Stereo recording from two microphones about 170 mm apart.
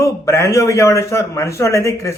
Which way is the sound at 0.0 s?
15° left (ahead or behind).